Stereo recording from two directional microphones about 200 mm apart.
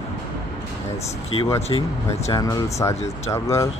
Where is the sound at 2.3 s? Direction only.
15° left (ahead or behind).